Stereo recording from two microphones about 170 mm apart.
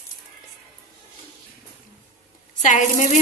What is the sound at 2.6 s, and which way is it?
Speech, 50° left (ahead or behind).